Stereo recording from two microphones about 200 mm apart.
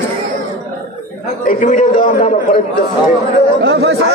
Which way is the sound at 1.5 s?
35° left (ahead or behind).